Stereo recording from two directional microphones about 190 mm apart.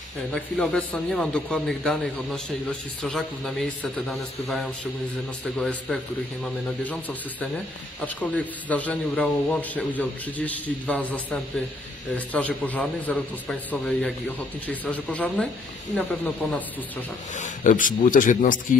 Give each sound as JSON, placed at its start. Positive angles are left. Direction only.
{"t": 0.3, "sound": "a man's voice", "side_deg": 5}
{"t": 17.4, "sound": "a man's voice", "side_deg": 45}